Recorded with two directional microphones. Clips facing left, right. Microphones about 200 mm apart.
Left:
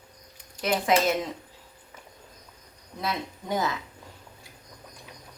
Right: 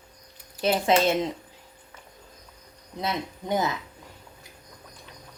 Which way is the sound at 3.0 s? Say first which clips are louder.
Right 2 dB; 20° right (ahead or behind).